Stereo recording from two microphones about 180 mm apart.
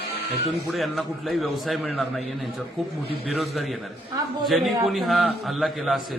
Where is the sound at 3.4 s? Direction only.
Centre (ahead or behind).